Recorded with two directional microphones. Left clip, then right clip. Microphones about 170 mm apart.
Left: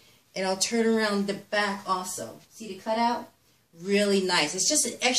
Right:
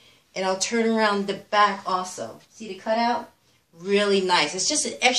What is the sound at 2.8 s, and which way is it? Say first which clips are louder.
Speech: right 3 dB; 30° left (ahead or behind).